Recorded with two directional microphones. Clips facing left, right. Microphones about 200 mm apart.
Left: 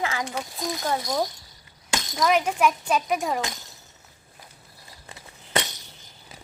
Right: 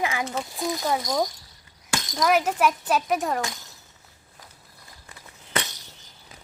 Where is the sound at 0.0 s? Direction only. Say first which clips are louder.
Right 1 dB; 15° right (ahead or behind).